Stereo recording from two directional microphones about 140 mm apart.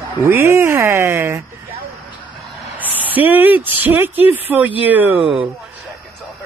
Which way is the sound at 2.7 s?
10° right (ahead or behind).